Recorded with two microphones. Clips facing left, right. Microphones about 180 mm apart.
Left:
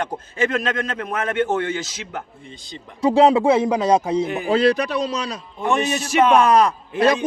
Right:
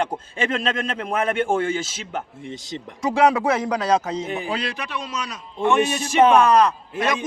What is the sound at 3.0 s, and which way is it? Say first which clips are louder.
Speech: left 4 dB; 30° left (ahead or behind).